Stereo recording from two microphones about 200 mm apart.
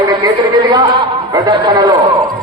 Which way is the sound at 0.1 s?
20° right (ahead or behind).